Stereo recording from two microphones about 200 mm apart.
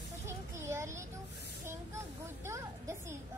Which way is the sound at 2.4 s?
15° right (ahead or behind).